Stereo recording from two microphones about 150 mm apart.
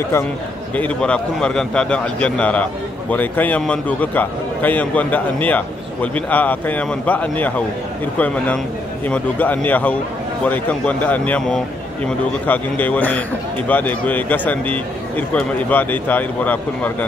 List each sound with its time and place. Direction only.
0.7 s a man's voice: 10° left (ahead or behind)
9.0 s a man's voice: 10° left (ahead or behind)